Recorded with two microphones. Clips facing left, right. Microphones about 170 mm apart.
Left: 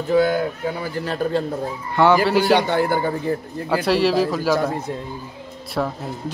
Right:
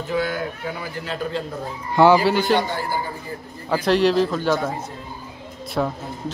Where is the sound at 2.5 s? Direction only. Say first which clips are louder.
Left 4 dB; 60° left (ahead or behind).